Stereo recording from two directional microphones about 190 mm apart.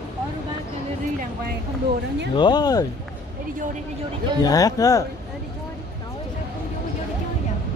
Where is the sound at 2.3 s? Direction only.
25° left (ahead or behind).